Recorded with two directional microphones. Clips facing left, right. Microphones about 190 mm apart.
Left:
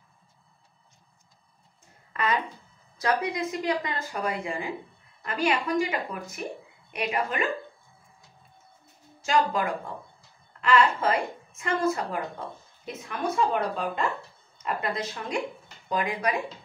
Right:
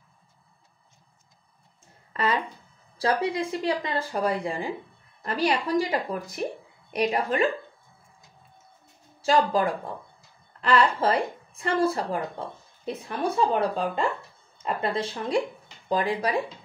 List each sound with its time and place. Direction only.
3.0 s speech: 30° right (ahead or behind)
9.2 s speech: 35° right (ahead or behind)